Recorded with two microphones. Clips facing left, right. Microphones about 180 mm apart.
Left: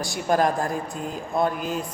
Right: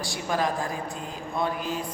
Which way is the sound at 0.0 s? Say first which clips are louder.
Left 6 dB; 45° left (ahead or behind).